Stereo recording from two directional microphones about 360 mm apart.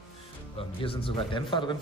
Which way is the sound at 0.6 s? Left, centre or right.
Centre.